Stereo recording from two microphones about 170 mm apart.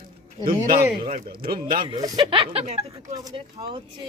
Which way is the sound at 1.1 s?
60° right (ahead or behind).